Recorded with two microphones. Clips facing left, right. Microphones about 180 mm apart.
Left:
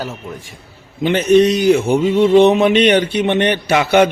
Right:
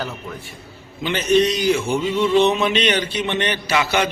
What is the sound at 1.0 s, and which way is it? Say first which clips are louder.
Speech: left 6 dB; 55° left (ahead or behind).